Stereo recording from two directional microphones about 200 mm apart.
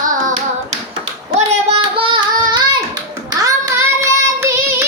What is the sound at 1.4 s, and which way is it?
Child singing, 30° right (ahead or behind).